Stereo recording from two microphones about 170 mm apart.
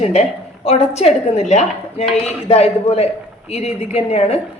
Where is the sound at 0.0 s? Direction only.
40° left (ahead or behind).